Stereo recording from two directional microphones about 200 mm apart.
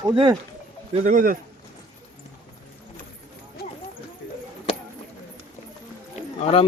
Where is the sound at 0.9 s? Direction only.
35° right (ahead or behind).